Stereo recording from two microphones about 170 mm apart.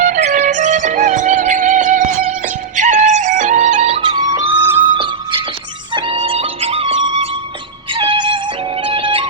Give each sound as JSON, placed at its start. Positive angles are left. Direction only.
{"t": 0.0, "sound": "music", "side_deg": -45}
{"t": 4.9, "sound": "music", "side_deg": -30}